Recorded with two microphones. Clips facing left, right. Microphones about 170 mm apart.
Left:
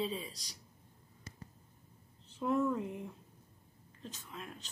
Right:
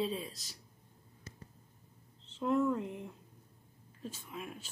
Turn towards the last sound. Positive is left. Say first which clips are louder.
# right 3 dB
turn(degrees=-10)  # may be behind; listen again after turning